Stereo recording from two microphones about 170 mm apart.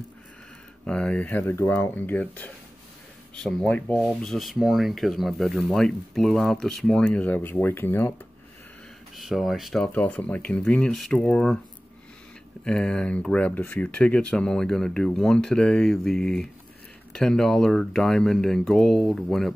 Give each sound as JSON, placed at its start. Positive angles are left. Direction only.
{"t": 0.8, "sound": "speech", "side_deg": 5}
{"t": 9.1, "sound": "speech", "side_deg": 0}
{"t": 12.6, "sound": "speech", "side_deg": 5}